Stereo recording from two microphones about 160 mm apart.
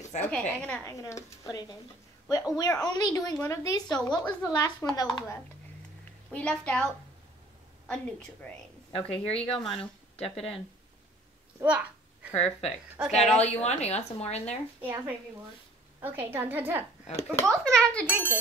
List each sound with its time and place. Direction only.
0.3 s a woman's voice: 10° left (ahead or behind); by 5.4 s 25° left (ahead or behind)
6.3 s a woman's voice: 5° left (ahead or behind)
8.4 s a woman's voice: 5° left (ahead or behind)
8.9 s speech: 35° left (ahead or behind)
9.6 s a child's voice: centre (ahead or behind)
11.6 s a sound: 10° right (ahead or behind)
12.4 s speech: 40° left (ahead or behind)
13.1 s a child's voice: centre (ahead or behind)
13.4 s speech: 45° left (ahead or behind)
14.8 s a woman's voice: 10° right (ahead or behind)
17.0 s speech: 40° left (ahead or behind)
17.5 s a child's voice: 5° left (ahead or behind)